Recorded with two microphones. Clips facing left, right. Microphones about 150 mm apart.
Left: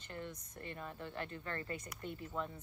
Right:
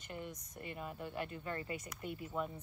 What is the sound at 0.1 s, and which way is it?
Speech, 15° right (ahead or behind).